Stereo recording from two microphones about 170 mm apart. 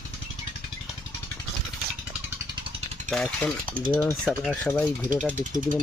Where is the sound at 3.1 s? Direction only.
5° left (ahead or behind).